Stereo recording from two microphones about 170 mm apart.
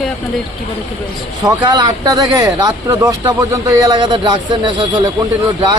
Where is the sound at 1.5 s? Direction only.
25° right (ahead or behind).